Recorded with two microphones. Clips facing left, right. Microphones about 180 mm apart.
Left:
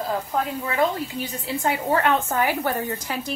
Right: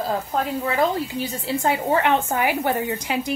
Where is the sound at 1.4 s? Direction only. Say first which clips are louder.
Right 2 dB; 30° right (ahead or behind).